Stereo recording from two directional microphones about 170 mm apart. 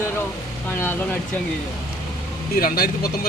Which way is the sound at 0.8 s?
10° left (ahead or behind).